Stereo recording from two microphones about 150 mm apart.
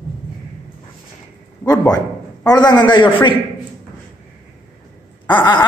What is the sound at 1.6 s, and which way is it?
A man's voice, 25° left (ahead or behind).